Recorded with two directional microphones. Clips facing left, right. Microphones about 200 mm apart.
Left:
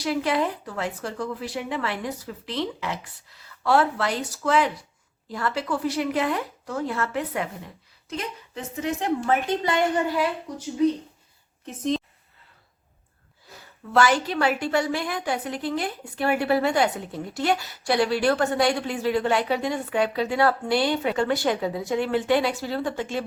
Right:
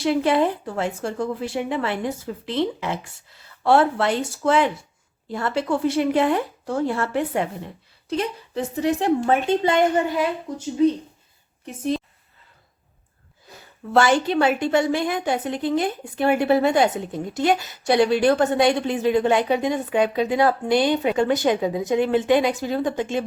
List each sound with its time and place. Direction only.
0.0 s a woman's voice: 25° right (ahead or behind)
11.6 s a woman's voice: 10° right (ahead or behind)
13.9 s a woman's voice: 25° right (ahead or behind)